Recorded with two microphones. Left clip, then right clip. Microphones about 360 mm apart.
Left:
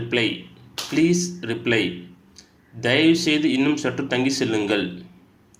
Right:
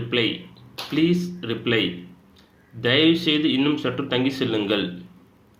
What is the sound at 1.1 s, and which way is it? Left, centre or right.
Speech, centre.